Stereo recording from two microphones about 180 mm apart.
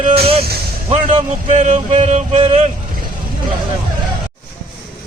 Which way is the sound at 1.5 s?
40° right (ahead or behind).